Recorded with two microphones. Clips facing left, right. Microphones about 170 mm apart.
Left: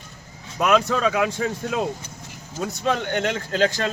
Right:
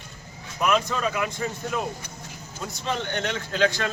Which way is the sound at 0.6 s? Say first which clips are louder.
Left 4 dB; 75° left (ahead or behind).